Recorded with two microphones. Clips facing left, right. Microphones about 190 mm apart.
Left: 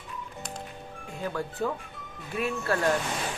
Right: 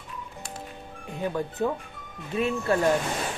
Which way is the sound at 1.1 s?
20° right (ahead or behind).